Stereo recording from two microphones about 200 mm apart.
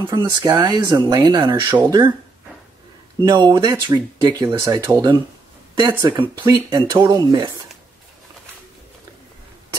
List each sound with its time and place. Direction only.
0.0 s speech: 20° right (ahead or behind)
3.2 s speech: 20° right (ahead or behind)